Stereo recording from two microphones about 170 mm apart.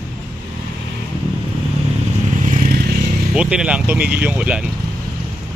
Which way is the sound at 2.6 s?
65° right (ahead or behind).